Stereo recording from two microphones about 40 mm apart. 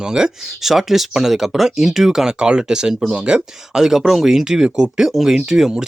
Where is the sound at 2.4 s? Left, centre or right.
Right.